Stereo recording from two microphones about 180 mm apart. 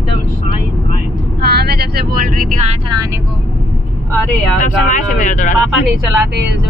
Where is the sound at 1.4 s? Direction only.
65° right (ahead or behind); by 2.8 s 40° right (ahead or behind).